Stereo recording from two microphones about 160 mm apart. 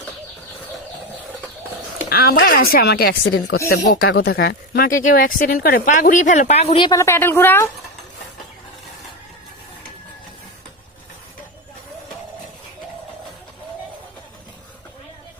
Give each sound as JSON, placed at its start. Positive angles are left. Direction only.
{"t": 2.1, "sound": "speech", "side_deg": 70}
{"t": 3.7, "sound": "speech", "side_deg": 75}
{"t": 6.9, "sound": "a woman's voice", "side_deg": 15}